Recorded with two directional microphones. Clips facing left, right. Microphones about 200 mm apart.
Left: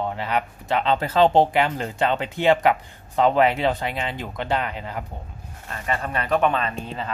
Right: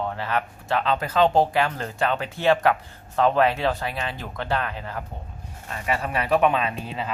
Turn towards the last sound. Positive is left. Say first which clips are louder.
# even
turn(degrees=-5)  # may be behind; listen again after turning